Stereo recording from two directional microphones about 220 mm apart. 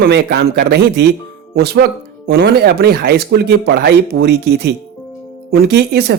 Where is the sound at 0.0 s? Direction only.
50° right (ahead or behind).